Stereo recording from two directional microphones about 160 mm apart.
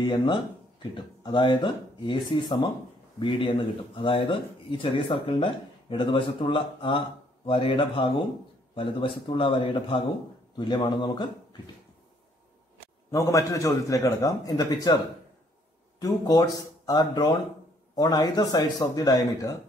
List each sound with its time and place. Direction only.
0.0 s a man's voice: 25° left (ahead or behind)
13.1 s a man's voice: 20° left (ahead or behind)
16.0 s a man's voice: 25° left (ahead or behind)